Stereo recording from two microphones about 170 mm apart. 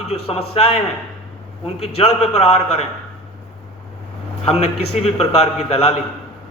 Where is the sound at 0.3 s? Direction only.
35° left (ahead or behind).